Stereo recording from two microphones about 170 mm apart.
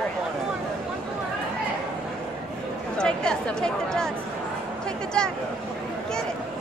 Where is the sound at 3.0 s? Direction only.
5° left (ahead or behind).